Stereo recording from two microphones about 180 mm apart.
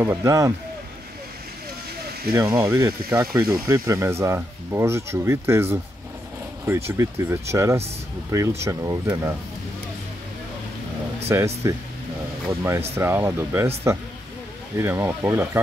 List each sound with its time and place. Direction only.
0.0 s speech: 15° right (ahead or behind)
2.3 s speech: 10° right (ahead or behind)
11.2 s speech: 15° right (ahead or behind)
14.8 s speech: 10° right (ahead or behind)